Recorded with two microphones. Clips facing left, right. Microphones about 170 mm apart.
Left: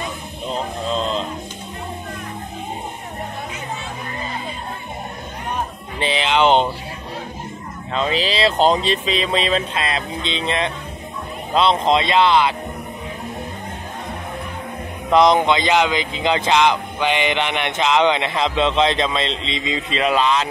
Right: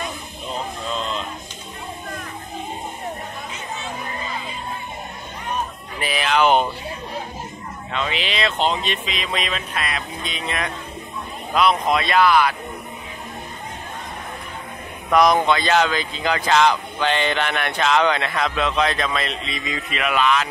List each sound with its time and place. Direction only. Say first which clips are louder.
0.9 s a sound: left 5 dB; 30° left (ahead or behind)
5.9 s music: left 2 dB; 25° left (ahead or behind)
7.9 s speech: left 5 dB; 35° left (ahead or behind)
15.0 s speech: left 2 dB; 25° left (ahead or behind)